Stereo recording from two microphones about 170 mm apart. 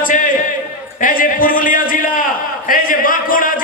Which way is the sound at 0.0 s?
50° left (ahead or behind).